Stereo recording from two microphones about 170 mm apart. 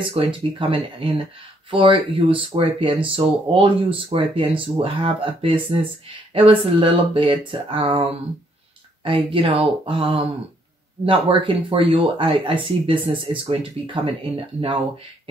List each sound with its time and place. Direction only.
0.0 s speech: 30° right (ahead or behind)